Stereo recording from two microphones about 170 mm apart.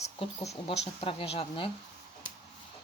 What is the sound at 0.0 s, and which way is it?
Speech, 35° left (ahead or behind).